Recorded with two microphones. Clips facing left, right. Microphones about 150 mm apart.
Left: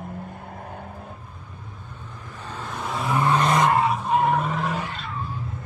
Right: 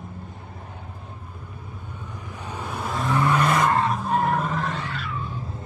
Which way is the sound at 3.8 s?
Centre (ahead or behind).